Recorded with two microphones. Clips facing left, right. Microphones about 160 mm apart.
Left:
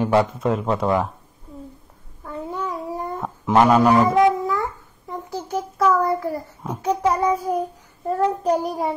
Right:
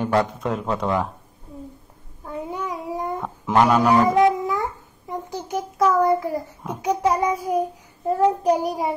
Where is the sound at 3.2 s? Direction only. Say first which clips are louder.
Left 2 dB; centre (ahead or behind).